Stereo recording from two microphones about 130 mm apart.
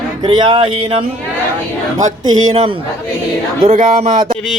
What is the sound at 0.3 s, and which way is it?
Speech, 40° right (ahead or behind).